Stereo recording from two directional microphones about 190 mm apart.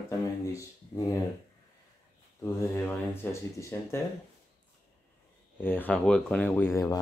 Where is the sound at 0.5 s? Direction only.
15° left (ahead or behind).